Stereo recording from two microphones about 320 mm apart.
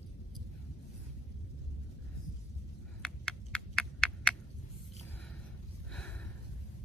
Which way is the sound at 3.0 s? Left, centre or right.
Centre.